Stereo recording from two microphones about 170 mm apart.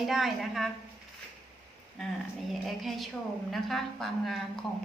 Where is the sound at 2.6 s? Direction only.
Centre (ahead or behind).